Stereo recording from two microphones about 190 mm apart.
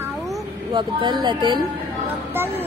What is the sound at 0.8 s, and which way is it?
Speech, 25° right (ahead or behind).